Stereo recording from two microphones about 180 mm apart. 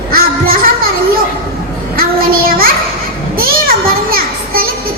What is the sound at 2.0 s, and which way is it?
Child singing, 55° right (ahead or behind).